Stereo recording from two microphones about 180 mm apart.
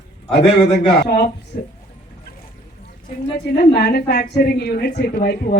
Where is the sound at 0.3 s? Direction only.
70° left (ahead or behind).